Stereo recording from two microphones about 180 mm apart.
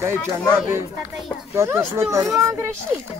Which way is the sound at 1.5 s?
15° right (ahead or behind).